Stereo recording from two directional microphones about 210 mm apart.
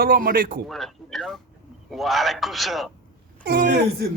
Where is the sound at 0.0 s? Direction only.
45° right (ahead or behind).